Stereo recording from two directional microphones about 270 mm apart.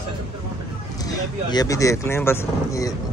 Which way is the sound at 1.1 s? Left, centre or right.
Centre.